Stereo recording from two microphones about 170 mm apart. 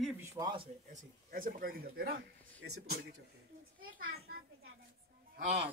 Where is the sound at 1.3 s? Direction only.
60° right (ahead or behind).